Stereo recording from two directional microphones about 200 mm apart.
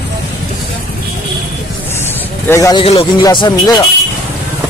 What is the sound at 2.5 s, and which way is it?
Speech, 15° left (ahead or behind).